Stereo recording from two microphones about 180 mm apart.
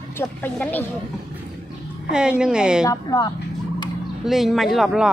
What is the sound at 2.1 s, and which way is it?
Speech, 5° right (ahead or behind).